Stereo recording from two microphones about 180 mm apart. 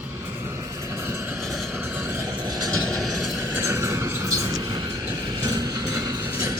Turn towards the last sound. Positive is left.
turn(degrees=-20)  # may be behind; listen again after turning